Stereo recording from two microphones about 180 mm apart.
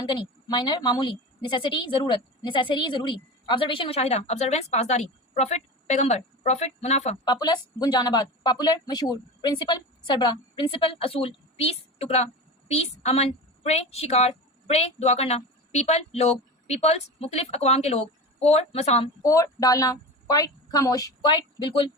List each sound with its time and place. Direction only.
0.1 s a woman's voice: 25° left (ahead or behind)
7.3 s a woman's voice: 25° left (ahead or behind)
19.2 s a woman's voice: 20° left (ahead or behind)